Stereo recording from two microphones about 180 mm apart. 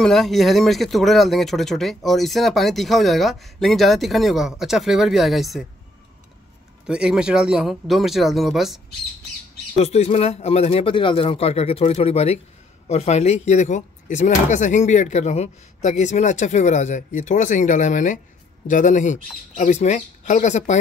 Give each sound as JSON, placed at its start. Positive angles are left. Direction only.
{"t": 0.0, "sound": "speech", "side_deg": 0}
{"t": 6.9, "sound": "speech", "side_deg": -5}
{"t": 9.8, "sound": "speech", "side_deg": 35}